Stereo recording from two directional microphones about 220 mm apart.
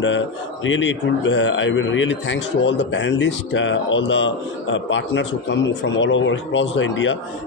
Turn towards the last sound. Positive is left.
turn(degrees=60)  # may be behind; listen again after turning